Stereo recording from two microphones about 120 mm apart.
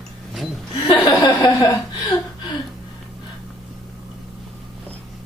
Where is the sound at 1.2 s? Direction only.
40° left (ahead or behind).